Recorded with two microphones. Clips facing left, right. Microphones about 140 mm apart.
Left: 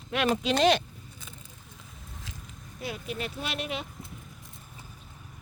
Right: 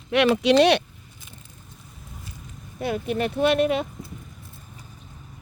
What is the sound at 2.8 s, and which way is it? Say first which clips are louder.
Speech: right 10 dB; 55° right (ahead or behind).